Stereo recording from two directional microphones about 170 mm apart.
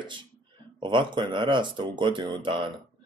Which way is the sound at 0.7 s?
30° right (ahead or behind).